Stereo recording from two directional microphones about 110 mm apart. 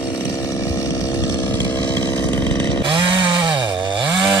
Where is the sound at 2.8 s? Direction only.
45° right (ahead or behind).